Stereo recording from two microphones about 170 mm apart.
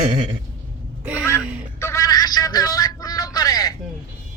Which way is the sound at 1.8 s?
15° left (ahead or behind).